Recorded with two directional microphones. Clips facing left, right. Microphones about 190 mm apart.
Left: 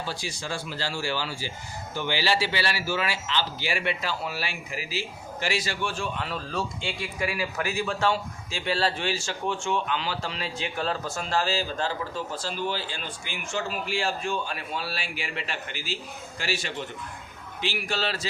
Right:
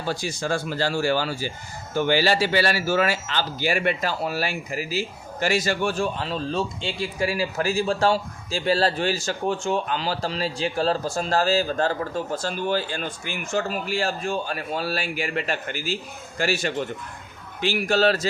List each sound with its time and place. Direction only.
0.0 s speech: 45° right (ahead or behind)